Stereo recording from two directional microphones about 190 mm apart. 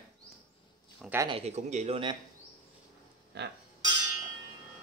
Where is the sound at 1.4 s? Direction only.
35° right (ahead or behind).